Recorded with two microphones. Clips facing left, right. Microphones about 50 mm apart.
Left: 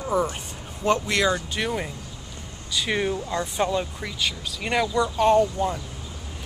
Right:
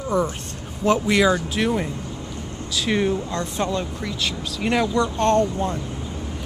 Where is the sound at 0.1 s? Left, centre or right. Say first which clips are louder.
Right 2 dB; centre.